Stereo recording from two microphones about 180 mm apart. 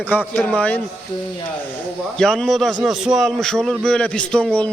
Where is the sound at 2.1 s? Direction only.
Centre (ahead or behind).